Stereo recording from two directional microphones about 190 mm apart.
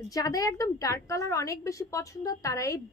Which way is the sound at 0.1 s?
20° left (ahead or behind).